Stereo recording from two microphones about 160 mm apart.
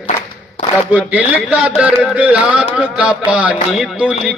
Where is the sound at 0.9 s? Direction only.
10° right (ahead or behind).